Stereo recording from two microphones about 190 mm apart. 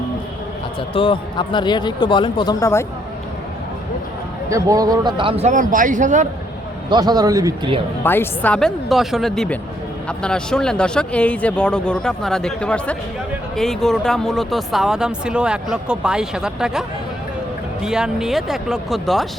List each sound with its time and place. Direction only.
0.9 s speech: 25° left (ahead or behind)
4.4 s a man's voice: 15° right (ahead or behind); by 6.2 s 40° right (ahead or behind)
6.9 s a man's voice: 20° right (ahead or behind)
8.0 s speech: 10° left (ahead or behind)
17.8 s speech: 5° right (ahead or behind)